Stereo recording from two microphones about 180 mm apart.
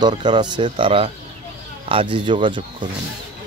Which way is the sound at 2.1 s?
25° right (ahead or behind).